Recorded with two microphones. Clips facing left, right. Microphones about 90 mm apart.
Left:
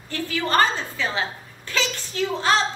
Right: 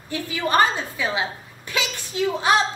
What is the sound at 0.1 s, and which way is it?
A woman's voice, 15° right (ahead or behind).